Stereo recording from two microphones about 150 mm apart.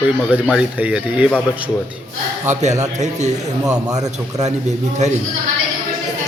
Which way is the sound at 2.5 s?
50° right (ahead or behind).